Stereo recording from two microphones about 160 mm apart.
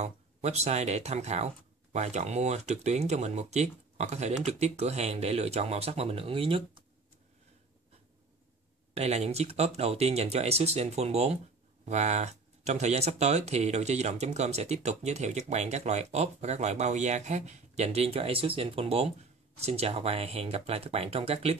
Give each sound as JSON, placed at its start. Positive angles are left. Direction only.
{"t": 0.0, "sound": "speech", "side_deg": -45}
{"t": 8.9, "sound": "speech", "side_deg": -40}